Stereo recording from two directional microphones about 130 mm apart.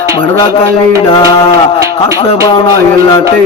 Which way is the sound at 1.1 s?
40° left (ahead or behind).